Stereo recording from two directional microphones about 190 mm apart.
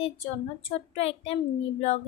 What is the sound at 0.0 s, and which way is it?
Speech, 30° left (ahead or behind).